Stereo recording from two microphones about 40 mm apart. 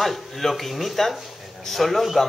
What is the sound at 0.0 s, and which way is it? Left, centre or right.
Speech, centre.